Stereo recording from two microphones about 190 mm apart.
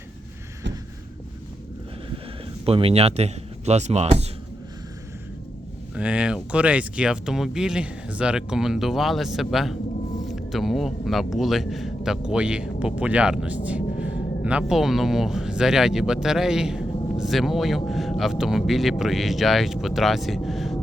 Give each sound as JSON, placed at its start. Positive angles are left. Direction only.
{"t": 2.6, "sound": "speech", "side_deg": -30}
{"t": 6.0, "sound": "speech", "side_deg": -5}